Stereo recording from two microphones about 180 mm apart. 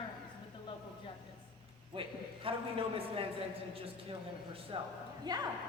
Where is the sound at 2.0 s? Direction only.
30° right (ahead or behind).